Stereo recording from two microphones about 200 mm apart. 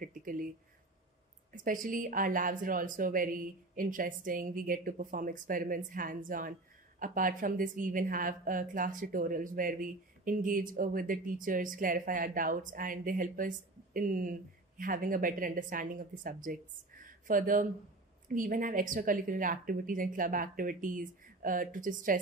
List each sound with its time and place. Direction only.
0.0 s a woman's voice: 45° right (ahead or behind)
1.5 s a woman's voice: 40° right (ahead or behind)